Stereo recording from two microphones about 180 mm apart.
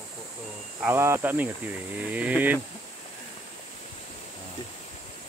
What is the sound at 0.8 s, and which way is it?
Speech, 15° right (ahead or behind).